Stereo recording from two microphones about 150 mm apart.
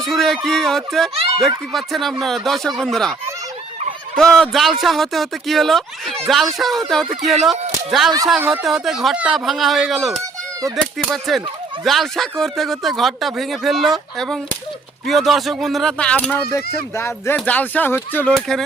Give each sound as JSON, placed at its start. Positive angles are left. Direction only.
{"t": 0.0, "sound": "speech", "side_deg": 0}
{"t": 4.2, "sound": "speech", "side_deg": 5}
{"t": 18.3, "sound": "speech", "side_deg": 5}